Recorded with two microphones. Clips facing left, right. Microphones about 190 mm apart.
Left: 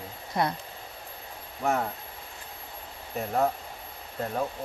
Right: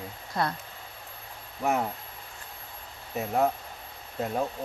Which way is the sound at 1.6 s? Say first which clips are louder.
Even; 5° right (ahead or behind).